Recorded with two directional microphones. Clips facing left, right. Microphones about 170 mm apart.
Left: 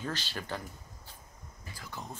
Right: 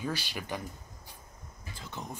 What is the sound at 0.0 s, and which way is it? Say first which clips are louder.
Speech: right 2 dB; 10° right (ahead or behind).